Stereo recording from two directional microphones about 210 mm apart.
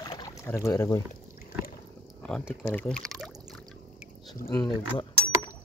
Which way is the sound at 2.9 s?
Centre (ahead or behind).